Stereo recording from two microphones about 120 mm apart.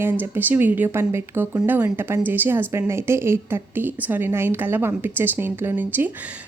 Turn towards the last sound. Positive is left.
turn(degrees=-15)  # may be behind; listen again after turning